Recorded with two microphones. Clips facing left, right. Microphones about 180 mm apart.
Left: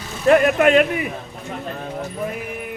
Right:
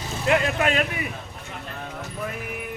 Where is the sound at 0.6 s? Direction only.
45° left (ahead or behind).